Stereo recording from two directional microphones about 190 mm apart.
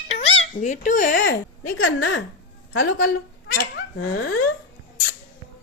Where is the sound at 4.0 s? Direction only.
80° left.